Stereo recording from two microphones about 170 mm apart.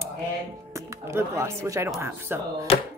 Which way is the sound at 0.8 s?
15° right (ahead or behind).